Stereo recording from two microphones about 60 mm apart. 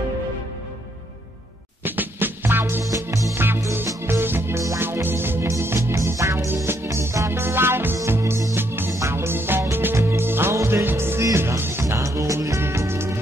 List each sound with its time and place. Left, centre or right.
1.9 s music: right
2.8 s music: right
3.8 s music: right
5.5 s organ: right
5.8 s music: right
6.3 s music: right
10.5 s music: right